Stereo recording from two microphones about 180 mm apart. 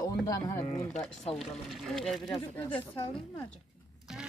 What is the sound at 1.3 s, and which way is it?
A woman's voice, centre (ahead or behind).